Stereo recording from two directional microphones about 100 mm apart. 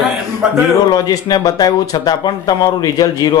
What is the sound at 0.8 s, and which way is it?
Speech, 40° left (ahead or behind).